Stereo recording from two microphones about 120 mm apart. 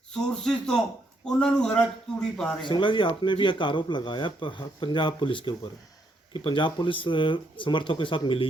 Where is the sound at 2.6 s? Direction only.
45° left (ahead or behind).